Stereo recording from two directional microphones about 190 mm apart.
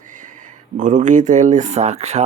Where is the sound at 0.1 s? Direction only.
40° right (ahead or behind).